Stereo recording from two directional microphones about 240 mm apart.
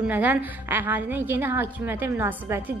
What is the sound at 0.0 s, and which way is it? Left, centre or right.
A woman's voice, centre.